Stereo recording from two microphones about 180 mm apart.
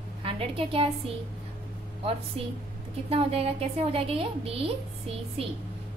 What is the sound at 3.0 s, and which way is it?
A woman's voice, 30° right (ahead or behind).